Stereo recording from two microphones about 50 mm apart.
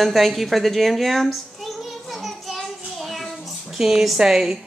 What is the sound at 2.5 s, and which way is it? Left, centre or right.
Child singing, centre.